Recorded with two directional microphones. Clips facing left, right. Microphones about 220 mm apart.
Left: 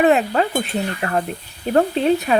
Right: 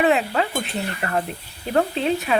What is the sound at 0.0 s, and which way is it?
Speech, 45° left (ahead or behind).